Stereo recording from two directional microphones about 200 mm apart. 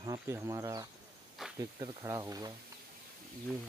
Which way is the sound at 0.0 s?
15° right (ahead or behind).